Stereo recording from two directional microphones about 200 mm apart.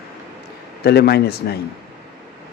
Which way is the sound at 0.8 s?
55° left (ahead or behind).